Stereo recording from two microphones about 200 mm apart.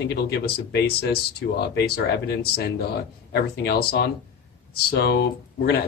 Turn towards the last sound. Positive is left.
turn(degrees=55)  # may be behind; listen again after turning